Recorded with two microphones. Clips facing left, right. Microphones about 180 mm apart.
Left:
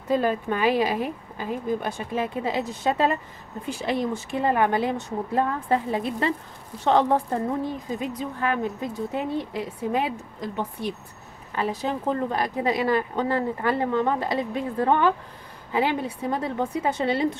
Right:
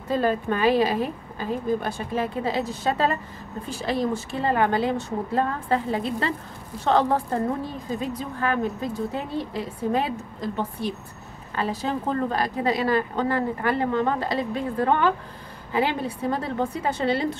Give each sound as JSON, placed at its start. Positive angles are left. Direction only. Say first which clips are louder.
{"t": 0.1, "sound": "a woman's voice", "louder": "even", "side_deg": 15}